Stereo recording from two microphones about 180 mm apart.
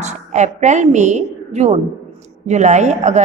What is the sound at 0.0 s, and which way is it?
A woman's voice, 40° right (ahead or behind).